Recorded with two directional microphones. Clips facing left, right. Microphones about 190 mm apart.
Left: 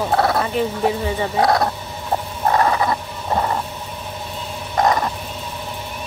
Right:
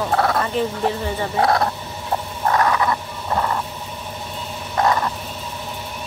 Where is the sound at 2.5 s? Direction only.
30° left (ahead or behind).